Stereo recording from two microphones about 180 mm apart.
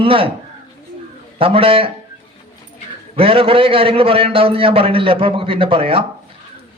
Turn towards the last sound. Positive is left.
turn(degrees=-30)  # may be behind; listen again after turning